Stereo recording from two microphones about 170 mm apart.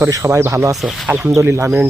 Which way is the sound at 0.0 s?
15° right (ahead or behind).